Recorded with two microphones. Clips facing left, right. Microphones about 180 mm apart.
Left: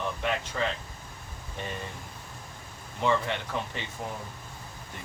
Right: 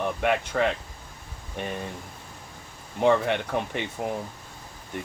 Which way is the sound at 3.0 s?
55° right (ahead or behind).